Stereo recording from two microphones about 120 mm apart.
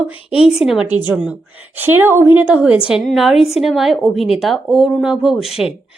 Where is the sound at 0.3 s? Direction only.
5° right (ahead or behind).